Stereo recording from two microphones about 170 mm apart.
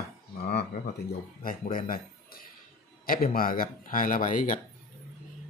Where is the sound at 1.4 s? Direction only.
60° left (ahead or behind).